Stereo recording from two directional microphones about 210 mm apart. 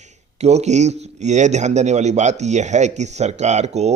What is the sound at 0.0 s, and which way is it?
Speech, 35° right (ahead or behind).